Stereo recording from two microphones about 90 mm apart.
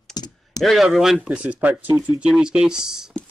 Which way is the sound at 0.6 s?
Centre (ahead or behind).